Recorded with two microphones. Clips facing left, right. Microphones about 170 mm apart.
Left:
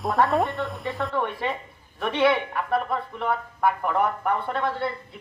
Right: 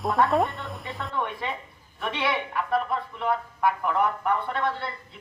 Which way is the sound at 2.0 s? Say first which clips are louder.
Left 7 dB; 55° left (ahead or behind).